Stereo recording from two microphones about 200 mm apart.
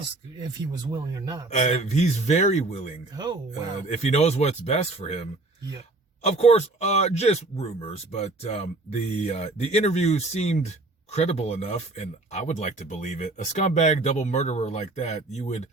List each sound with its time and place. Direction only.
0.7 s a man's voice: 20° right (ahead or behind)
1.5 s speech: 35° left (ahead or behind)
3.2 s speech: 20° right (ahead or behind)
3.9 s speech: 35° left (ahead or behind)
6.2 s speech: 30° left (ahead or behind)